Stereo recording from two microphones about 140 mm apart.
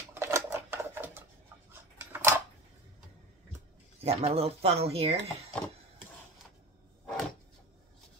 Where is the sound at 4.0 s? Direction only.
45° right (ahead or behind).